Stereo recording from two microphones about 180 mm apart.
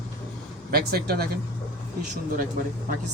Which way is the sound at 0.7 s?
60° right (ahead or behind).